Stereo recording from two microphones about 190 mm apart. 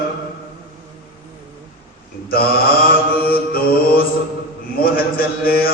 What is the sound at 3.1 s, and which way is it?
Mantra, 50° left (ahead or behind).